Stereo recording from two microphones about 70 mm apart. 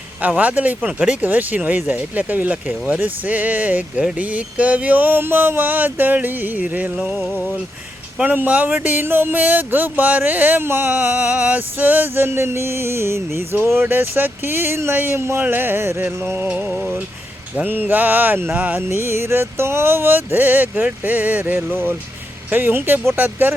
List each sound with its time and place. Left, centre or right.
0.2 s speech: right
6.9 s music: centre
8.2 s speech: right
15.1 s music: right
16.5 s music: centre
17.6 s speech: right
18.9 s speech: right